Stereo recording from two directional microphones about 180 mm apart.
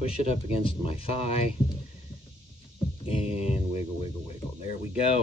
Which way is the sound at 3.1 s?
35° left (ahead or behind).